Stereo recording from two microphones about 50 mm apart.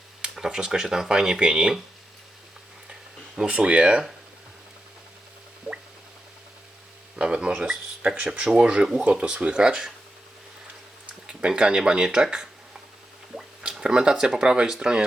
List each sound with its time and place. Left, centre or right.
0.2 s speech: centre
3.5 s speech: right
7.2 s speech: centre
7.7 s speech: right
8.3 s speech: centre
11.3 s speech: centre
13.6 s speech: centre